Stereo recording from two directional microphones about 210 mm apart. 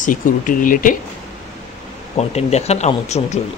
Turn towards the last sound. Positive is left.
turn(degrees=30)  # may be behind; listen again after turning